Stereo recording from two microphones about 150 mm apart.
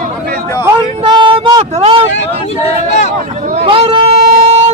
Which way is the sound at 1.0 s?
30° right (ahead or behind).